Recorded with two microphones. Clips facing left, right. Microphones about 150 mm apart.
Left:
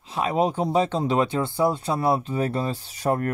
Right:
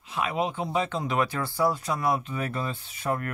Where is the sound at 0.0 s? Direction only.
35° left (ahead or behind).